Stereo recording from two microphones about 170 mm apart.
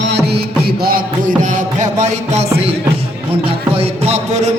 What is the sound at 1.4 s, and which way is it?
Music, 45° right (ahead or behind).